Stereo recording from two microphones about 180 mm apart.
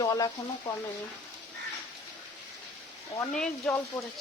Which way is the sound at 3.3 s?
5° left (ahead or behind).